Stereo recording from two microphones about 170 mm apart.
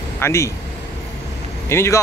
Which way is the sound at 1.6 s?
15° left (ahead or behind).